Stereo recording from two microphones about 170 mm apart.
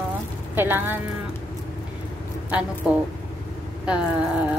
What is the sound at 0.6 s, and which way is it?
Speech, 10° right (ahead or behind).